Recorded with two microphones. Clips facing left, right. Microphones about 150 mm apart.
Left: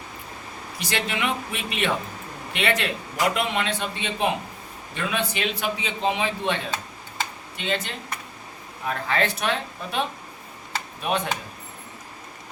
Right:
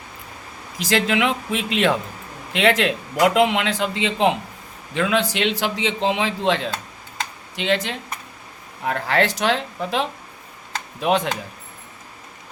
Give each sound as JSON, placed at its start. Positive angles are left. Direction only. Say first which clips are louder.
{"t": 0.8, "sound": "a man's voice", "louder": "right 8 dB", "side_deg": -90}
{"t": 8.8, "sound": "a man's voice", "louder": "right 4 dB", "side_deg": -75}